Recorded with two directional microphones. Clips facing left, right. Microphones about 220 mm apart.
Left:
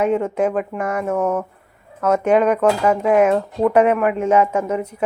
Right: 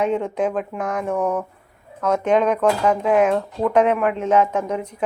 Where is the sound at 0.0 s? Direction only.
5° left (ahead or behind).